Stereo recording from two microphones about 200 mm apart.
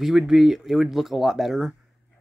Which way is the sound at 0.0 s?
Centre (ahead or behind).